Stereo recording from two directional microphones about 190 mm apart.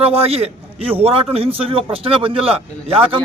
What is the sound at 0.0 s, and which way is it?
A man's voice, 30° right (ahead or behind).